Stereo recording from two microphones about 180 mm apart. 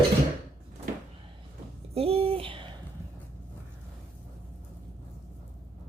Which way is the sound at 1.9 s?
35° right (ahead or behind).